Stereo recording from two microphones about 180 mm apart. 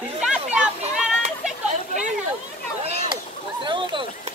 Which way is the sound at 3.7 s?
25° right (ahead or behind).